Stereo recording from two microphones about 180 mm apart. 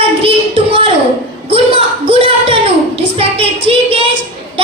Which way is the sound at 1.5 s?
30° right (ahead or behind).